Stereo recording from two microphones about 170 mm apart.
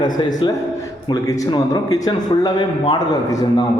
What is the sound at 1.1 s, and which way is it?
Speech, 20° left (ahead or behind).